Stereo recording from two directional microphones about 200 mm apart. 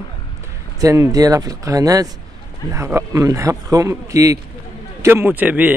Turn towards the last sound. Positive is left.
turn(degrees=-10)  # may be behind; listen again after turning